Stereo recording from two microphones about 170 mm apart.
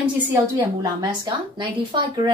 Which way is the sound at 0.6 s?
25° right (ahead or behind).